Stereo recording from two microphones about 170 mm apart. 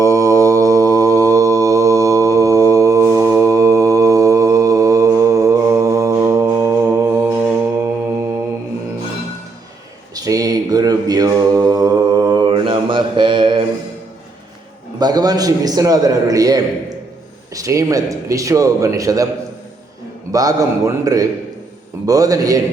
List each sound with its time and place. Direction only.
0.0 s mantra: 20° right (ahead or behind)
10.2 s mantra: 20° right (ahead or behind)
14.9 s a man's voice: 25° right (ahead or behind)
20.3 s a man's voice: 20° right (ahead or behind)